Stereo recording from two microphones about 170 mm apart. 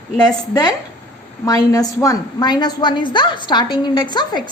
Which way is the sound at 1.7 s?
20° left (ahead or behind).